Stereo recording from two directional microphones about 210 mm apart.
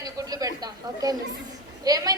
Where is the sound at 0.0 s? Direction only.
15° right (ahead or behind).